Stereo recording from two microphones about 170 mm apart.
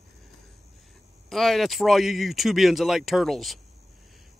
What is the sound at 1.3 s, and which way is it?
A man's voice, centre (ahead or behind).